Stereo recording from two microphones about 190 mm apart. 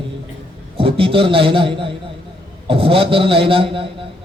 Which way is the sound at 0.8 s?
30° right (ahead or behind).